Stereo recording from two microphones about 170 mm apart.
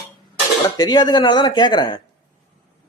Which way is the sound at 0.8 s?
25° left (ahead or behind).